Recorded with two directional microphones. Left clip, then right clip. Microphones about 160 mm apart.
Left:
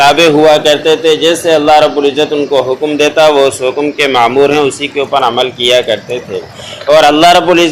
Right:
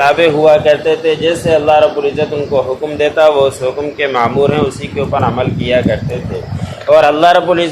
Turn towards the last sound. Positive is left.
turn(degrees=25)  # may be behind; listen again after turning